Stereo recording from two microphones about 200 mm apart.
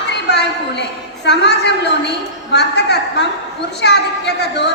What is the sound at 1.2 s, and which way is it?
A woman's voice, 60° left (ahead or behind).